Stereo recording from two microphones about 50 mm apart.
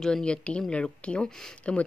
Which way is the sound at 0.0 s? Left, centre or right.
Centre.